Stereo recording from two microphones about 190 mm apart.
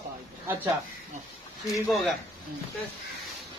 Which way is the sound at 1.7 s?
Centre (ahead or behind).